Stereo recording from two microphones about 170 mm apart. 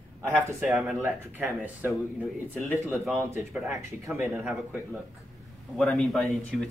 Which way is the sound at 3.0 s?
10° right (ahead or behind).